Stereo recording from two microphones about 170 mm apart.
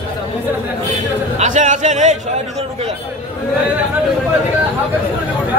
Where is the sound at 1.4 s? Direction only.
45° right (ahead or behind).